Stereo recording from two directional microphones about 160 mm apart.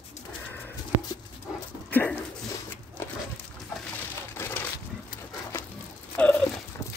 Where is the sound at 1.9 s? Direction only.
10° left (ahead or behind).